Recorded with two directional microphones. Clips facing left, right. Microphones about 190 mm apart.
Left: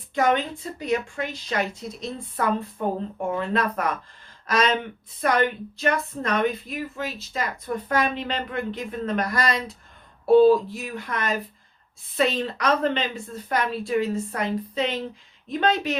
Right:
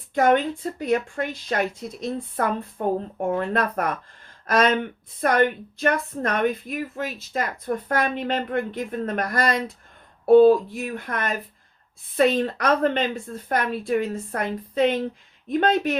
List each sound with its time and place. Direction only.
0.1 s a woman's voice: 55° right (ahead or behind)